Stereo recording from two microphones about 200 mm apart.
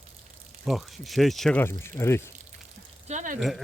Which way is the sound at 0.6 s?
Centre (ahead or behind).